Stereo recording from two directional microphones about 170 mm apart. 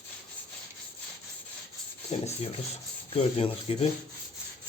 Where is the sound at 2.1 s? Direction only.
35° left (ahead or behind).